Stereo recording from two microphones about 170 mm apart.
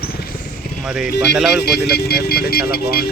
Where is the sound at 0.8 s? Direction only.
5° right (ahead or behind).